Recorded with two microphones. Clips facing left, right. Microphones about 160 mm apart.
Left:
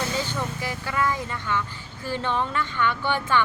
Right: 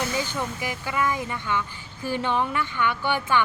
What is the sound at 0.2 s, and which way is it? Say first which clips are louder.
A woman's voice: even; 15° right (ahead or behind).